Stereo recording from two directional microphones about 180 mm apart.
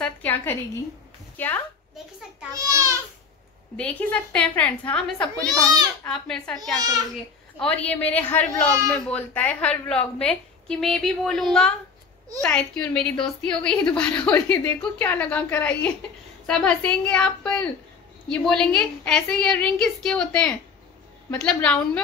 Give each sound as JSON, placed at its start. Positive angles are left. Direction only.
{"t": 0.0, "sound": "a woman's voice", "side_deg": 10}
{"t": 2.5, "sound": "a child's voice", "side_deg": -15}
{"t": 3.7, "sound": "a woman's voice", "side_deg": 5}
{"t": 6.8, "sound": "a child's voice", "side_deg": -20}
{"t": 7.6, "sound": "a woman's voice", "side_deg": 10}